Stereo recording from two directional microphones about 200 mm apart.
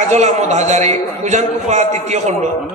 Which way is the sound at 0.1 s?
35° right (ahead or behind).